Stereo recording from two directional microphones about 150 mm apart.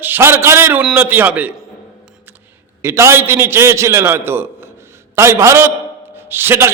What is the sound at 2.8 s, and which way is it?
A man's voice, 20° right (ahead or behind).